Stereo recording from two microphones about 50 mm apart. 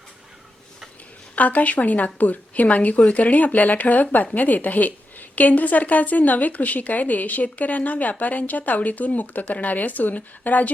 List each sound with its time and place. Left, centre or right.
1.4 s a woman's voice: left